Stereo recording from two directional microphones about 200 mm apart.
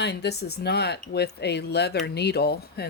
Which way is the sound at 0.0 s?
55° left (ahead or behind).